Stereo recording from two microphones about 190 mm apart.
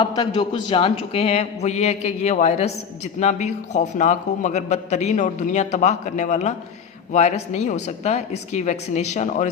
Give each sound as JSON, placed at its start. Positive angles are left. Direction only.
{"t": 0.0, "sound": "a man's voice", "side_deg": 20}